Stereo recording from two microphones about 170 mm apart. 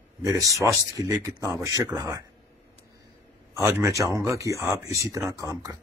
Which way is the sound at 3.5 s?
15° right (ahead or behind).